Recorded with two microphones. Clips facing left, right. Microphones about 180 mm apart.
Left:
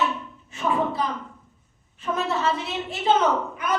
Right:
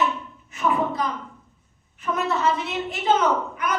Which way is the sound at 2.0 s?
25° left (ahead or behind).